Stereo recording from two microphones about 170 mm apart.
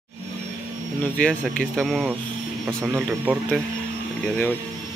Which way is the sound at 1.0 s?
10° left (ahead or behind).